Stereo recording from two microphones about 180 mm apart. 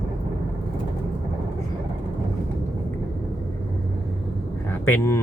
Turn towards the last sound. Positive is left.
turn(degrees=10)  # may be behind; listen again after turning